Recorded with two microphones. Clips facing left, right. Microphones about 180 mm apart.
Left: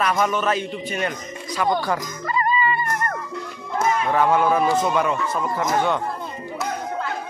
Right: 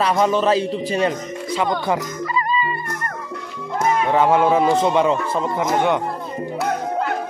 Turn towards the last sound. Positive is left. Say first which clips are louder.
# right 3 dB
turn(degrees=-20)  # may be behind; listen again after turning